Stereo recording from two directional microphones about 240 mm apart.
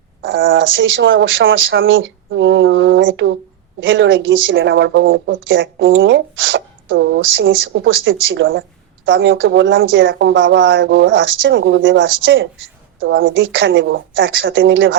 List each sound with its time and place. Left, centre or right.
0.3 s speech: right